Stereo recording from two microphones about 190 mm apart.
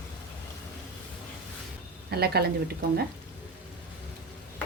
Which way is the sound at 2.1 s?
55° right (ahead or behind).